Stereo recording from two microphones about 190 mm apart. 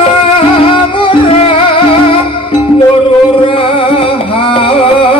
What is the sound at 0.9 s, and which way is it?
Music, 25° left (ahead or behind).